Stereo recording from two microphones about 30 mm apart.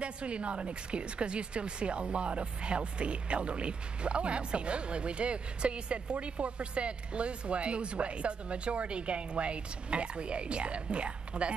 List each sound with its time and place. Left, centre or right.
0.0 s speech: right